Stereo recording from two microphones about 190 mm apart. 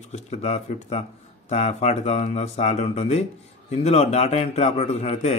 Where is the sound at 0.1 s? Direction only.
35° left (ahead or behind).